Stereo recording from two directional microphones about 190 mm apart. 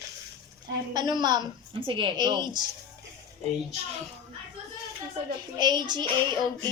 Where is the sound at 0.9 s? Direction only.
20° right (ahead or behind).